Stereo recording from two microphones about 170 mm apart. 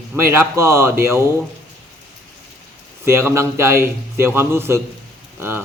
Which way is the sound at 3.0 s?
15° right (ahead or behind).